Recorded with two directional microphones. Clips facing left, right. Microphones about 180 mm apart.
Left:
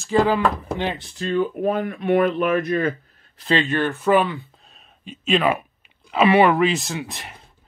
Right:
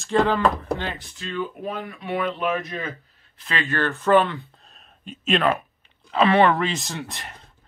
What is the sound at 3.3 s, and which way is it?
Speech, 30° left (ahead or behind).